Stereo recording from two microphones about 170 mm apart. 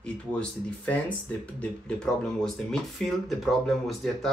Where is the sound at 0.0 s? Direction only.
5° left (ahead or behind).